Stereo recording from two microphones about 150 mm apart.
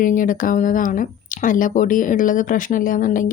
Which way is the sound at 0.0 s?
60° left (ahead or behind).